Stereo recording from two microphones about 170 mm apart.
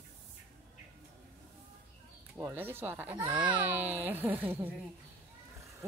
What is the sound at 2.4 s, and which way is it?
Speech, 10° right (ahead or behind).